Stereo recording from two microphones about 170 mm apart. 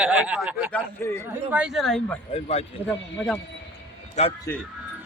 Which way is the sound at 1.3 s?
10° right (ahead or behind).